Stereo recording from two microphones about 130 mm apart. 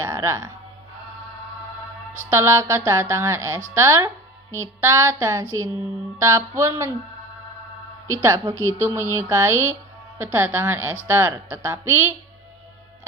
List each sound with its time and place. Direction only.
0.0 s speech: 20° right (ahead or behind)
2.3 s speech: 20° right (ahead or behind)
8.1 s a woman's voice: 25° right (ahead or behind)